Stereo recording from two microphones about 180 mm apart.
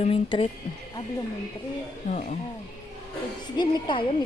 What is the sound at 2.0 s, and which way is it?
Speech, 45° left (ahead or behind).